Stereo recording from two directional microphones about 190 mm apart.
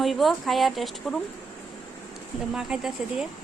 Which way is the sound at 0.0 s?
Centre (ahead or behind).